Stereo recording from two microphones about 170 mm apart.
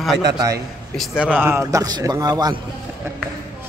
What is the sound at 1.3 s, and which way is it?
A man's voice, 10° right (ahead or behind).